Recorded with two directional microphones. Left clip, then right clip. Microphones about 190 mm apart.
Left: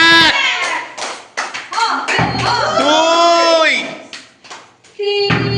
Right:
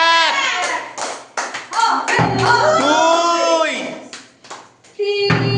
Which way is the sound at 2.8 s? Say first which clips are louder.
Left 3 dB; centre (ahead or behind).